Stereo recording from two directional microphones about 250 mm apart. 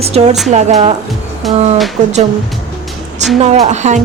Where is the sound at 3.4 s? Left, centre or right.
Right.